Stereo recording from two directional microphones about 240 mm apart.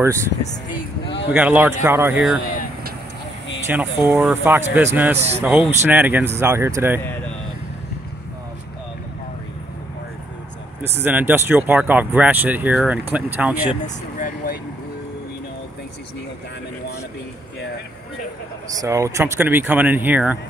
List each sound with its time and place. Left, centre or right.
0.4 s speech: left
1.3 s speech: centre
3.7 s speech: centre
11.0 s speech: centre
13.8 s speech: left
18.8 s speech: centre